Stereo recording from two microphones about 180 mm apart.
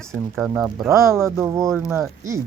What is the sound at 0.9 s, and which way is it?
Speech, 15° right (ahead or behind).